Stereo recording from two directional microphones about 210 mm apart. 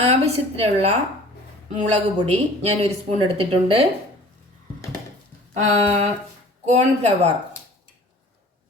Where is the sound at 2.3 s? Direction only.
30° right (ahead or behind).